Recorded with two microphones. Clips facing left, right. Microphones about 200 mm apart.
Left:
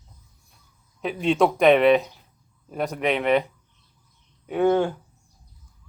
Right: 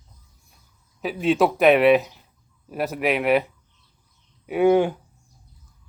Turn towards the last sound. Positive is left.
turn(degrees=-15)  # may be behind; listen again after turning